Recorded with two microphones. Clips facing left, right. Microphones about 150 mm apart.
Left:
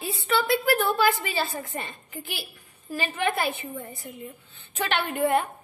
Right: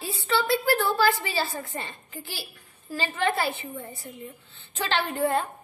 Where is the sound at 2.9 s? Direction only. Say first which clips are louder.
Even; 15° left (ahead or behind).